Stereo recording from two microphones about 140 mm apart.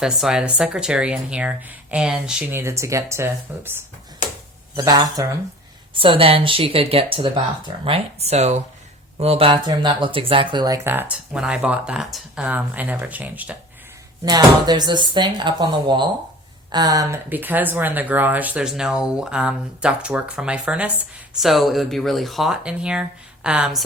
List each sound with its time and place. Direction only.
0.0 s speech: 5° right (ahead or behind)
2.5 s speech: 20° right (ahead or behind)
4.8 s speech: 30° right (ahead or behind)
10.8 s speech: 15° right (ahead or behind)
14.3 s speech: 30° right (ahead or behind)
17.2 s speech: 15° right (ahead or behind)